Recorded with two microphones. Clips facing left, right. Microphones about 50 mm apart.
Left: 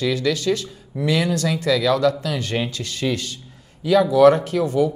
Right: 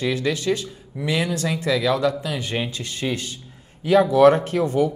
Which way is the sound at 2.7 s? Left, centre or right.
Right.